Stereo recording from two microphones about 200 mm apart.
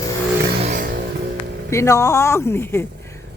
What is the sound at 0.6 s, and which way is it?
Vehicle, 40° right (ahead or behind).